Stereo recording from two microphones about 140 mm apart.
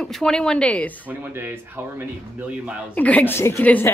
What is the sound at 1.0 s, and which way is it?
Speech, 15° right (ahead or behind).